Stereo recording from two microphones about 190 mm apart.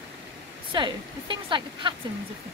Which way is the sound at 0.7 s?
25° right (ahead or behind).